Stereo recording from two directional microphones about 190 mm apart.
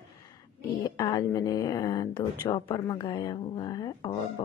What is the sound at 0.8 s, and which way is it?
Speech, 20° left (ahead or behind).